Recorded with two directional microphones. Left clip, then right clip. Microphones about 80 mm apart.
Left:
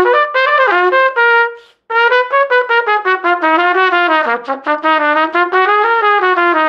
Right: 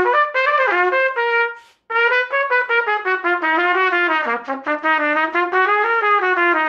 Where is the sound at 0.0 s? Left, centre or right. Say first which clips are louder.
Left 5 dB; left.